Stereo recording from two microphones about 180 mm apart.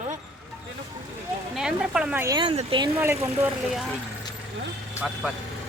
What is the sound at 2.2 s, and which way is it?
Speech, 25° right (ahead or behind).